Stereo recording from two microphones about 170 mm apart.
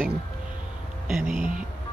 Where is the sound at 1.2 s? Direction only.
45° right (ahead or behind).